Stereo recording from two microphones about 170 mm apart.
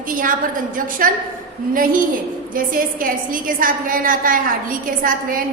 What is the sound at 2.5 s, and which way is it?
A woman's voice, 55° right (ahead or behind).